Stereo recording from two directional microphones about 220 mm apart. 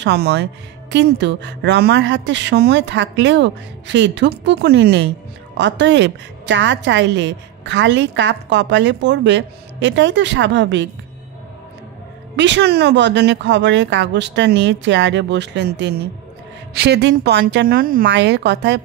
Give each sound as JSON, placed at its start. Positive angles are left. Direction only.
{"t": 0.0, "sound": "a woman's voice", "side_deg": -50}
{"t": 12.4, "sound": "a woman's voice", "side_deg": -55}
{"t": 18.0, "sound": "a woman's voice", "side_deg": -55}